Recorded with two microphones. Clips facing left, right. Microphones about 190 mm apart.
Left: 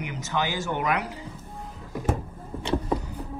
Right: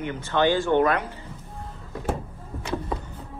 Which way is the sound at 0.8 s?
10° left (ahead or behind).